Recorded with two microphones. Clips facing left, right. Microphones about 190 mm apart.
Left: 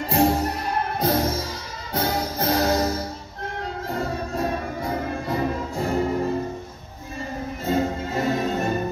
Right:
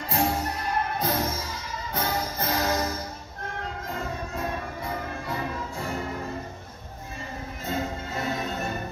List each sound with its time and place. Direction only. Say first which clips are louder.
0.1 s music: left 6 dB; 35° left (ahead or behind)
7.6 s music: left 7 dB; 40° left (ahead or behind)